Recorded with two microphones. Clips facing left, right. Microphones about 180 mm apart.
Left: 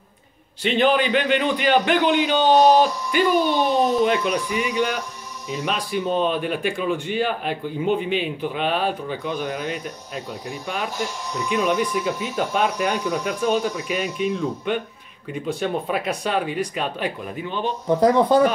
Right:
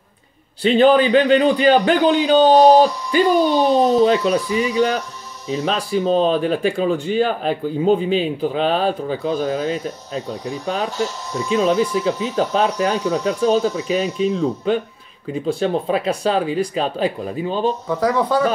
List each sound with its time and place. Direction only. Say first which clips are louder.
0.6 s speech: right 6 dB; 35° right (ahead or behind)
17.8 s speech: left 2 dB; 25° left (ahead or behind)